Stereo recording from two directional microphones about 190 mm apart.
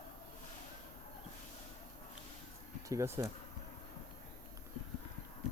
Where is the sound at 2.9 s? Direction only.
15° right (ahead or behind).